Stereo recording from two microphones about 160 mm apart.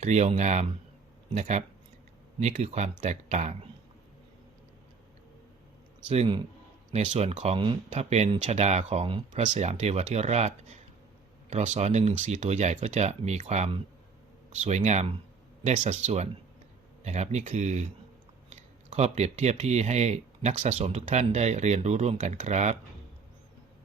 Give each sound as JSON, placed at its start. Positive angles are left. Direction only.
{"t": 0.0, "sound": "speech", "side_deg": -45}
{"t": 6.1, "sound": "speech", "side_deg": -40}
{"t": 9.3, "sound": "speech", "side_deg": -50}